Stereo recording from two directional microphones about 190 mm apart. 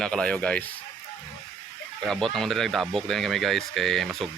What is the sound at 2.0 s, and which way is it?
Speech, centre (ahead or behind).